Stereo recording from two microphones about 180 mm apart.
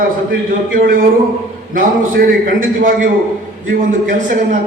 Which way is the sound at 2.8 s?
50° right (ahead or behind).